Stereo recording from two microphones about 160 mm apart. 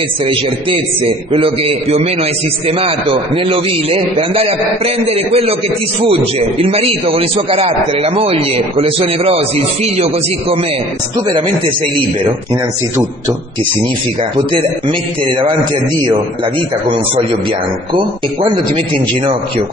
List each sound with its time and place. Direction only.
1.3 s a man's voice: 35° right (ahead or behind)
6.6 s a man's voice: 35° right (ahead or behind)
14.9 s a man's voice: 30° right (ahead or behind)